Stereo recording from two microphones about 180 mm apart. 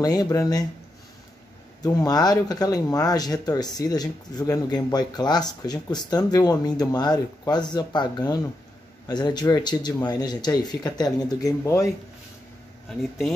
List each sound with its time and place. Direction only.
0.0 s speech: 20° left (ahead or behind)
1.8 s speech: 20° left (ahead or behind)